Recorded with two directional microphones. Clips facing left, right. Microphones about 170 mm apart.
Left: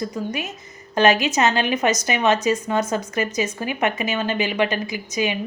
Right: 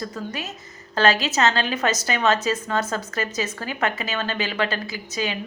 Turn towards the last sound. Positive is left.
turn(degrees=15)  # may be behind; listen again after turning